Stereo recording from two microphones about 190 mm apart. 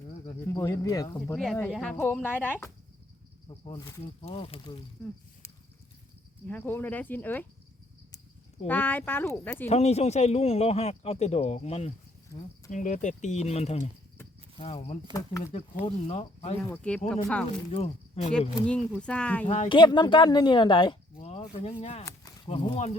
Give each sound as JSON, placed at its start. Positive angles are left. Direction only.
{"t": 0.4, "sound": "speech", "side_deg": 15}
{"t": 1.7, "sound": "speech", "side_deg": 5}
{"t": 3.5, "sound": "a woman's voice", "side_deg": 30}
{"t": 6.5, "sound": "speech", "side_deg": 10}
{"t": 8.6, "sound": "speech", "side_deg": 10}
{"t": 9.6, "sound": "speech", "side_deg": 35}
{"t": 12.3, "sound": "speech", "side_deg": 15}
{"t": 12.7, "sound": "speech", "side_deg": 40}
{"t": 15.1, "sound": "speech", "side_deg": 15}
{"t": 15.9, "sound": "speech", "side_deg": 35}
{"t": 16.6, "sound": "speech", "side_deg": 10}
{"t": 17.7, "sound": "speech", "side_deg": 30}
{"t": 18.3, "sound": "speech", "side_deg": 5}
{"t": 19.5, "sound": "a woman's voice", "side_deg": 30}